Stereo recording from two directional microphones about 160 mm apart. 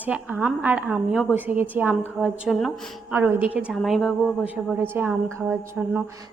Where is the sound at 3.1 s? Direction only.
10° right (ahead or behind).